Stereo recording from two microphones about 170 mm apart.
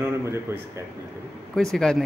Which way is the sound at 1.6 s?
5° left (ahead or behind).